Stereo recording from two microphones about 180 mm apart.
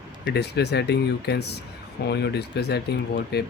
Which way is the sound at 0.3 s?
65° left (ahead or behind).